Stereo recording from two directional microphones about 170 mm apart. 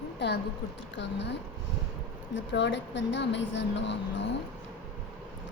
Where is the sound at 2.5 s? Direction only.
90° left.